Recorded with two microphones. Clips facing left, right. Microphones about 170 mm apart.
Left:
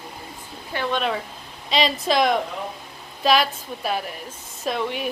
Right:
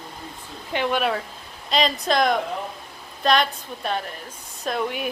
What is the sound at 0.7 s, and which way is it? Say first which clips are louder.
Speech: right 2 dB; 15° right (ahead or behind).